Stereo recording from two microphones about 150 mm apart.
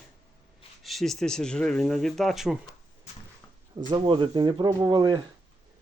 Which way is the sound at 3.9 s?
35° right (ahead or behind).